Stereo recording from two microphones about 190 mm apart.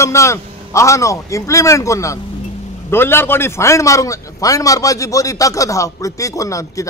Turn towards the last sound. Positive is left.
turn(degrees=15)  # may be behind; listen again after turning